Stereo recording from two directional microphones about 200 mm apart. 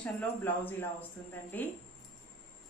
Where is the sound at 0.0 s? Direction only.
10° left (ahead or behind).